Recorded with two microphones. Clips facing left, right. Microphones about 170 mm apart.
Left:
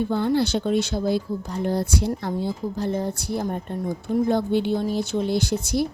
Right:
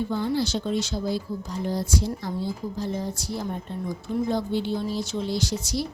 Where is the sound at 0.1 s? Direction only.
60° left (ahead or behind).